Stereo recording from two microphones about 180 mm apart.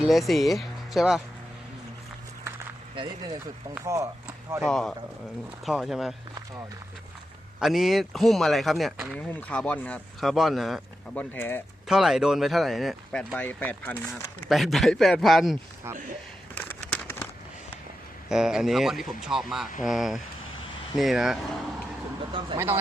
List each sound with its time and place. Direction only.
0.0 s speech: centre (ahead or behind)
2.9 s speech: 25° right (ahead or behind)
3.8 s speech: 15° right (ahead or behind)
4.6 s speech: centre (ahead or behind)
7.6 s speech: centre (ahead or behind)
11.9 s speech: centre (ahead or behind)
14.5 s speech: centre (ahead or behind)
16.6 s a sound: 10° left (ahead or behind)
18.3 s speech: 5° right (ahead or behind)
22.3 s speech: 30° right (ahead or behind)
22.5 s speech: 15° right (ahead or behind)